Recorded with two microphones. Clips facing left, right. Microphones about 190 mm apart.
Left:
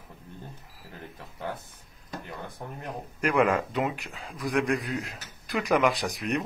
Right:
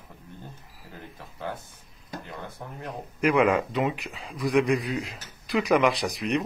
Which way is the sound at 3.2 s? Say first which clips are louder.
Right 2 dB; centre (ahead or behind).